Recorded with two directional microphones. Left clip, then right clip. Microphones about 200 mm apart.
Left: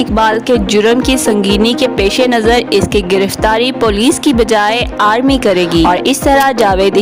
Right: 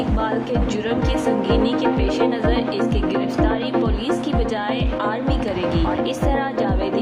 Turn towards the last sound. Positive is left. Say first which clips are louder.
# left 12 dB
turn(degrees=60)  # may be behind; listen again after turning